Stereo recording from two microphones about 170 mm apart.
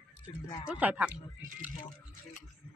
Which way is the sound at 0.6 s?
5° right (ahead or behind).